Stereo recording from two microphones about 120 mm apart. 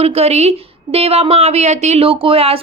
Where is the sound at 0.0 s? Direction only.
60° right (ahead or behind).